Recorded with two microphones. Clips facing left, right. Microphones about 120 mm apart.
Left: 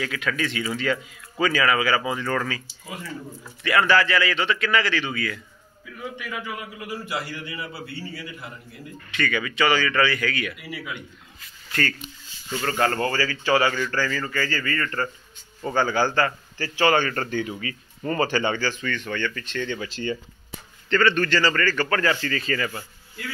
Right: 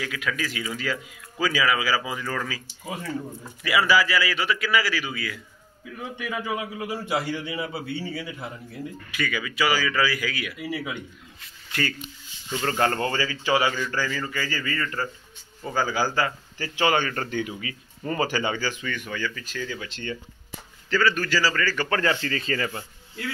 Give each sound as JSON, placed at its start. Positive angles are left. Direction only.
{"t": 0.0, "sound": "speech", "side_deg": 0}
{"t": 3.6, "sound": "a man's voice", "side_deg": -5}
{"t": 6.4, "sound": "a man's voice", "side_deg": -25}
{"t": 9.1, "sound": "a man's voice", "side_deg": -5}
{"t": 10.6, "sound": "a man's voice", "side_deg": -25}
{"t": 12.5, "sound": "a man's voice", "side_deg": -25}
{"t": 21.8, "sound": "a man's voice", "side_deg": -25}